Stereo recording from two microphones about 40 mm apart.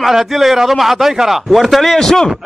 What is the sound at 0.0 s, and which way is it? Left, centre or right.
A man's voice, centre.